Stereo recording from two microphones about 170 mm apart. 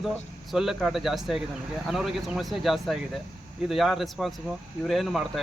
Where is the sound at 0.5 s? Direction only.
Centre (ahead or behind).